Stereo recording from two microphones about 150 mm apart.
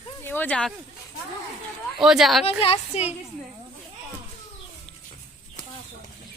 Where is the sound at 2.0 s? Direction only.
Centre (ahead or behind).